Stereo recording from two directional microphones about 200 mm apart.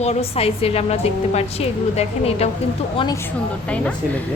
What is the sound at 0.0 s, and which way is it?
A woman's voice, 30° left (ahead or behind).